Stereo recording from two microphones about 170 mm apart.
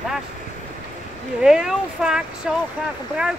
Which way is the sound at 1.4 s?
5° right (ahead or behind).